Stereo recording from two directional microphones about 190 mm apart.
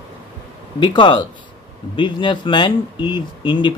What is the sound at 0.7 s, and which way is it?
Speech, 25° left (ahead or behind).